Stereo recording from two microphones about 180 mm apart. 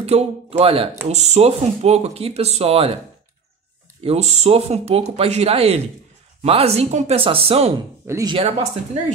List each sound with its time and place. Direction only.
0.0 s speech: 35° right (ahead or behind)
4.0 s speech: 35° right (ahead or behind)
8.1 s speech: 20° right (ahead or behind)
8.4 s speech: 35° right (ahead or behind)